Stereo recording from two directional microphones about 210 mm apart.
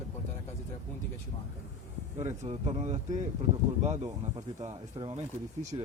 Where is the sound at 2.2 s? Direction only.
30° right (ahead or behind).